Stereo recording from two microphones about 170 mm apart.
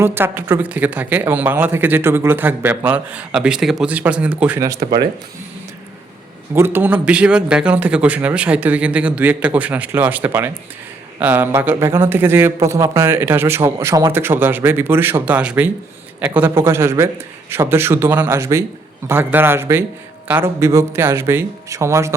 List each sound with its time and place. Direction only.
0.0 s speech: 15° right (ahead or behind)
6.5 s speech: 15° right (ahead or behind)